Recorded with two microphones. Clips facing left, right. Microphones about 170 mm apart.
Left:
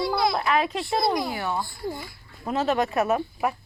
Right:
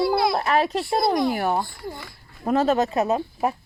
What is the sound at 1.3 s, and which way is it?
Speech, 50° right (ahead or behind).